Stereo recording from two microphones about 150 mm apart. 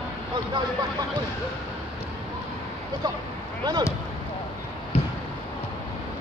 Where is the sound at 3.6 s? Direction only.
30° right (ahead or behind).